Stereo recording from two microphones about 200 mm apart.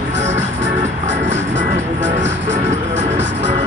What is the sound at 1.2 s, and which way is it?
Music, 65° right (ahead or behind).